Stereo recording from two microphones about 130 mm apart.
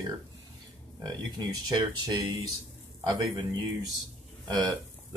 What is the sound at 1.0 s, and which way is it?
Speech, 30° right (ahead or behind).